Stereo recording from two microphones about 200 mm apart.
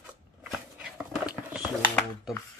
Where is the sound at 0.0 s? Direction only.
5° right (ahead or behind).